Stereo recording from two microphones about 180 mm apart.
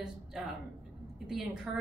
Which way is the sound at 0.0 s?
Centre (ahead or behind).